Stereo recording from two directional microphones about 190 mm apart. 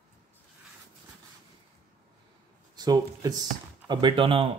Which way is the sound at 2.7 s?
20° right (ahead or behind).